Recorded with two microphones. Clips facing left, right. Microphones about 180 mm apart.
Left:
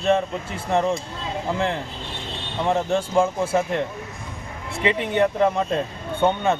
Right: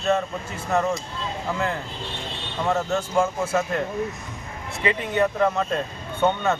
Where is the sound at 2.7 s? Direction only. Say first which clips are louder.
Left 2 dB; 25° left (ahead or behind).